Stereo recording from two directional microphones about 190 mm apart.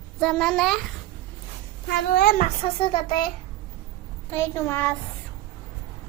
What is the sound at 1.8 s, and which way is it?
A child's voice, 50° left (ahead or behind).